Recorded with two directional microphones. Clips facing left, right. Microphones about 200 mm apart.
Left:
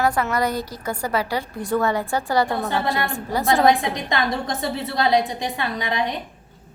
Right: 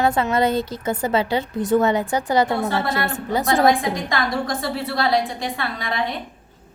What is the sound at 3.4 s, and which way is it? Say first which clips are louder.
A woman's voice: even; 20° left (ahead or behind).